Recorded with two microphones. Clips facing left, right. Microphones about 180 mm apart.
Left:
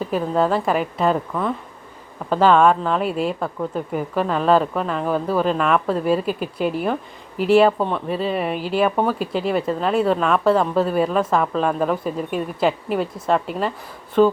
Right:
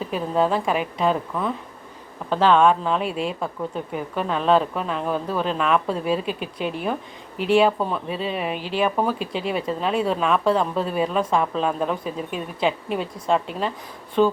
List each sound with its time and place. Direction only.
0.1 s speech: centre (ahead or behind)
12.0 s speech: 45° left (ahead or behind)
12.5 s speech: 5° left (ahead or behind)